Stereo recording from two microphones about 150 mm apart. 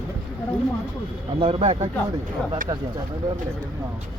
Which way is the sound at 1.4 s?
35° right (ahead or behind).